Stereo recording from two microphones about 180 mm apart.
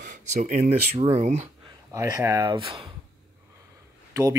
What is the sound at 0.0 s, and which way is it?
Speech, 45° right (ahead or behind).